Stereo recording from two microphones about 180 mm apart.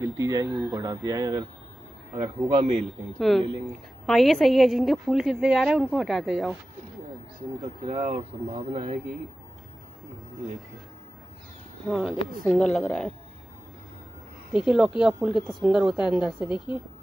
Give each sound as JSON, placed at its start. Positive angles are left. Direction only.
{"t": 0.0, "sound": "speech", "side_deg": -20}
{"t": 3.2, "sound": "a woman's voice", "side_deg": 0}
{"t": 7.8, "sound": "speech", "side_deg": -45}
{"t": 11.9, "sound": "a woman's voice", "side_deg": 0}
{"t": 14.5, "sound": "a woman's voice", "side_deg": -5}